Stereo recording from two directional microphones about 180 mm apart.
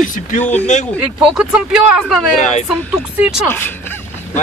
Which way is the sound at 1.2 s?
5° right (ahead or behind).